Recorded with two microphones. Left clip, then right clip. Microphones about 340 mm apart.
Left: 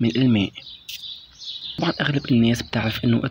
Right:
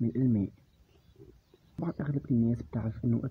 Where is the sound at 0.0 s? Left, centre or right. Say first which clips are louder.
Left 10 dB; right.